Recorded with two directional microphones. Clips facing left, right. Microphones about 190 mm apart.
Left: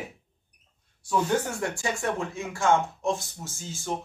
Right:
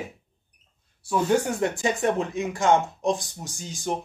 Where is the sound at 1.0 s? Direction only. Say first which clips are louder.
Right 3 dB; 10° right (ahead or behind).